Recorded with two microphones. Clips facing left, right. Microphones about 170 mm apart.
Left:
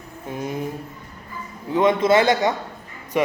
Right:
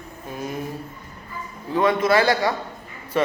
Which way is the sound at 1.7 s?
20° left (ahead or behind).